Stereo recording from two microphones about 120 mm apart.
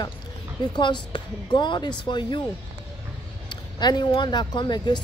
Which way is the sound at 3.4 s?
35° left (ahead or behind).